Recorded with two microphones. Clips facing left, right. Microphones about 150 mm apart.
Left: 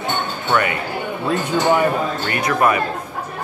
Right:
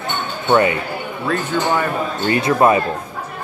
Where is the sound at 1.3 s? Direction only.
15° left (ahead or behind).